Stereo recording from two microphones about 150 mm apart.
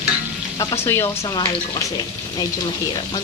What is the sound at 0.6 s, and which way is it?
Speech, 20° left (ahead or behind).